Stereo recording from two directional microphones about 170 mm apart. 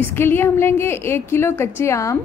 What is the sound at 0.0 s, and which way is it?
A woman's voice, 15° left (ahead or behind).